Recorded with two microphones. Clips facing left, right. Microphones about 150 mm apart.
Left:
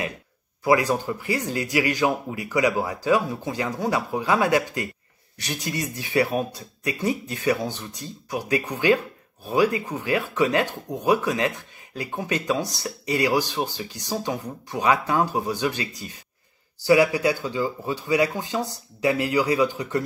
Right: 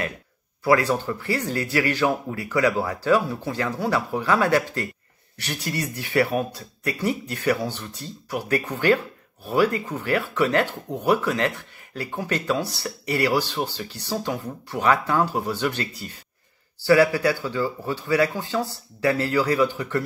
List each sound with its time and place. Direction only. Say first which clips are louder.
0.7 s speech: even; 15° left (ahead or behind)